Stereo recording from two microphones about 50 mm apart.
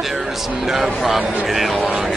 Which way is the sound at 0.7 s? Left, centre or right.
Centre.